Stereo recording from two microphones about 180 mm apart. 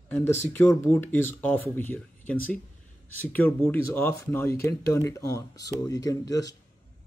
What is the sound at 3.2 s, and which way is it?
Speech, 10° left (ahead or behind).